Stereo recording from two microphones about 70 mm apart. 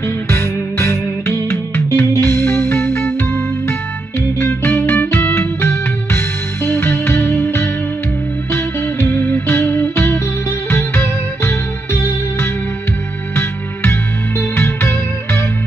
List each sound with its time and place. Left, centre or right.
0.3 s music: left
14.5 s music: left